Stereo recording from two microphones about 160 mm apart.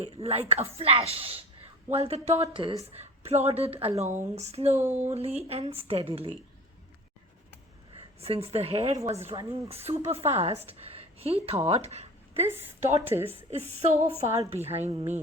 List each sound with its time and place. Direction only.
0.0 s speech: 35° right (ahead or behind)
8.2 s speech: 40° right (ahead or behind)
9.4 s speech: 25° right (ahead or behind)
9.6 s speech: 40° right (ahead or behind)
10.9 s a sound: 40° right (ahead or behind)
12.8 s a woman's voice: 40° right (ahead or behind)